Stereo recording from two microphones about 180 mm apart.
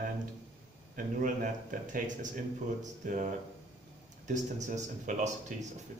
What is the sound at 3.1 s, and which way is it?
A man's voice, 45° right (ahead or behind).